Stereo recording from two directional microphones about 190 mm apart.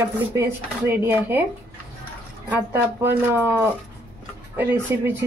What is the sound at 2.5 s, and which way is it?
Speech, 15° right (ahead or behind).